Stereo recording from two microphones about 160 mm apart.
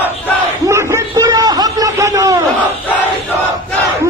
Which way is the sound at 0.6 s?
15° right (ahead or behind).